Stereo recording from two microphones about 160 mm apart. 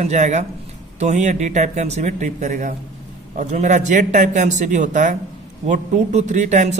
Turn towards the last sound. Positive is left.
turn(degrees=-50)  # may be behind; listen again after turning